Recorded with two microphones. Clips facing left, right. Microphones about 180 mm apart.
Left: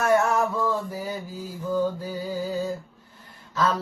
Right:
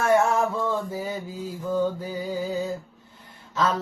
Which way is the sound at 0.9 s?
25° right (ahead or behind).